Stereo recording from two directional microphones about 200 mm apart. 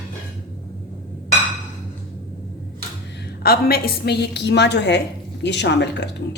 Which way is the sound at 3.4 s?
55° left (ahead or behind).